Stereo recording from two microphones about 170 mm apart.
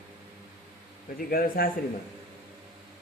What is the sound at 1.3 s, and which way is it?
Speech, 60° left (ahead or behind).